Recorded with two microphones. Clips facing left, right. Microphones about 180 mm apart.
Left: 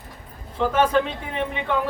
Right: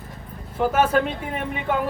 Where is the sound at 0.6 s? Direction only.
10° right (ahead or behind).